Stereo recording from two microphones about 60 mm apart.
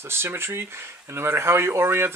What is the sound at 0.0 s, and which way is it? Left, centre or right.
Speech, right.